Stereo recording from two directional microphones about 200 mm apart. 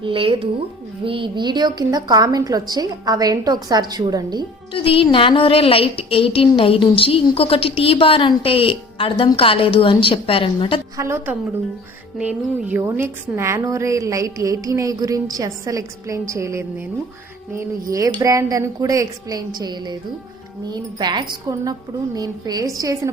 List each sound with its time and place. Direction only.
0.0 s a woman's voice: 25° right (ahead or behind)
4.7 s a woman's voice: 30° left (ahead or behind)
10.9 s a woman's voice: 15° right (ahead or behind)